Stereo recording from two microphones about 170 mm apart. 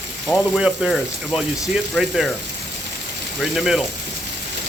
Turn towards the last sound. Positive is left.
turn(degrees=0)  # may be behind; listen again after turning